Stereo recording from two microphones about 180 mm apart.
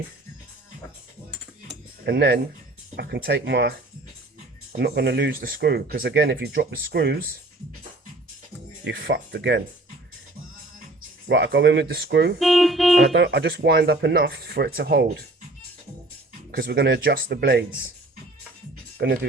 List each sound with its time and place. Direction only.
1.6 s cutlery: 65° right (ahead or behind)
2.9 s speech: 65° right (ahead or behind)
4.8 s speech: 65° right (ahead or behind)
8.9 s speech: 85° right
11.3 s speech: 80° right
12.4 s speech: centre (ahead or behind)
13.1 s speech: 70° right (ahead or behind)
16.5 s speech: 60° right (ahead or behind)
18.9 s speech: 55° right (ahead or behind)